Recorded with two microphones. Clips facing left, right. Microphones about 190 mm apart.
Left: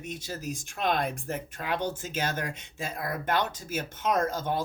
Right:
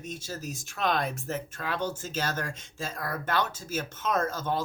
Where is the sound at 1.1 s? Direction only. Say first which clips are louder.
Right 1 dB; 15° left (ahead or behind).